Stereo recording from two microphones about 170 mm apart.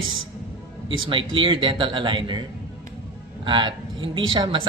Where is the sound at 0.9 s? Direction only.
30° right (ahead or behind).